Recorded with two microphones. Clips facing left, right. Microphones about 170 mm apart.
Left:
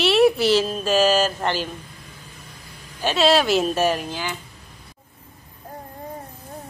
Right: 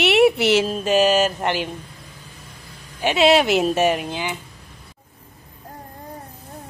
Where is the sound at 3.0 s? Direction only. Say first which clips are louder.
Right 2 dB; 20° right (ahead or behind).